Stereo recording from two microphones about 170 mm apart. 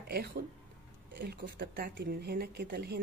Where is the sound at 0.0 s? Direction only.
65° right (ahead or behind).